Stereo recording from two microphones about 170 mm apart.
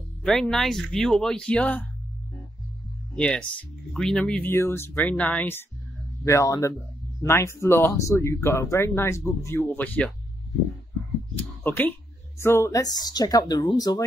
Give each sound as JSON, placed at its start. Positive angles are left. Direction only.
{"t": 0.2, "sound": "speech", "side_deg": 5}
{"t": 3.2, "sound": "speech", "side_deg": 5}
{"t": 11.6, "sound": "speech", "side_deg": 10}